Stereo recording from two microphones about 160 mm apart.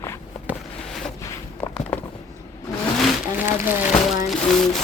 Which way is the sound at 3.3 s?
15° right (ahead or behind).